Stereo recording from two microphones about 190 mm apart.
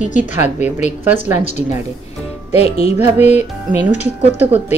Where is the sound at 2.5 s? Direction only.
35° left (ahead or behind).